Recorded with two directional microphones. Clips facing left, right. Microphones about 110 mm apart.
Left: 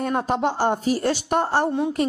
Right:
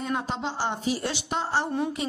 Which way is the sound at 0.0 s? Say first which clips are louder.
Left 7 dB; 50° left (ahead or behind).